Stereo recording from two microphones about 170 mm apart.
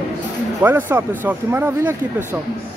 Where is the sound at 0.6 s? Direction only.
10° right (ahead or behind).